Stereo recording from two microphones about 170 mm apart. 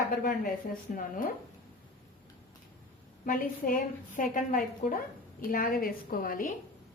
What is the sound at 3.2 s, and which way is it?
A woman's voice, 55° left (ahead or behind).